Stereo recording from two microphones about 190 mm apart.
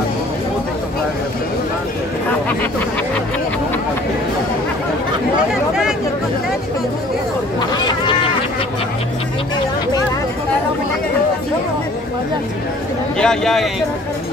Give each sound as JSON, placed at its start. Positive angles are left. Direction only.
{"t": 5.5, "sound": "speech", "side_deg": -5}
{"t": 7.7, "sound": "a sound", "side_deg": 20}
{"t": 13.2, "sound": "a man's voice", "side_deg": 5}